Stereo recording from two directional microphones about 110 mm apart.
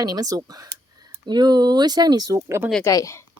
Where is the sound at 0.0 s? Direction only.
35° right (ahead or behind).